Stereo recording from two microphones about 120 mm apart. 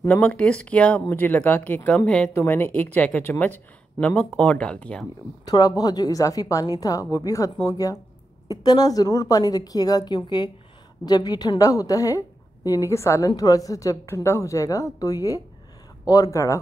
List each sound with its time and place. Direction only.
0.2 s speech: 10° left (ahead or behind)
2.3 s speech: 20° left (ahead or behind)
5.4 s a woman's voice: 30° left (ahead or behind)